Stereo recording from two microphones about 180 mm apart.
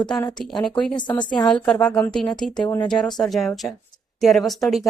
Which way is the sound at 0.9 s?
25° left (ahead or behind).